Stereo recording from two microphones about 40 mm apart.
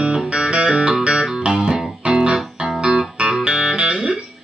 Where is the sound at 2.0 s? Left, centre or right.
Right.